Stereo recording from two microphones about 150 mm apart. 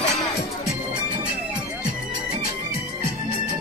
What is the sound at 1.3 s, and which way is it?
Music, 5° right (ahead or behind).